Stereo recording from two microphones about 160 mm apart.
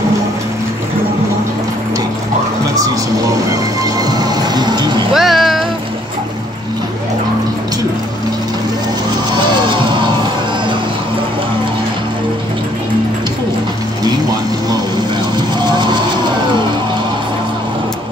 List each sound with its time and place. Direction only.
4.0 s music: 25° right (ahead or behind)
5.1 s music: centre (ahead or behind)
9.3 s music: 30° right (ahead or behind)
15.3 s vehicle: 30° right (ahead or behind)